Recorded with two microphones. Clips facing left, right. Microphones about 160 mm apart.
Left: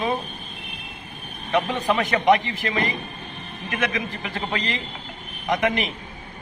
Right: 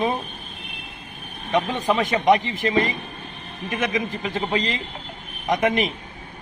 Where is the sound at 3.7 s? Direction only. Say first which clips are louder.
Right 2 dB; 20° right (ahead or behind).